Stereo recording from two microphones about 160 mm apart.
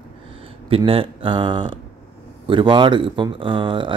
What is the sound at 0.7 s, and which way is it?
Speech, 35° right (ahead or behind).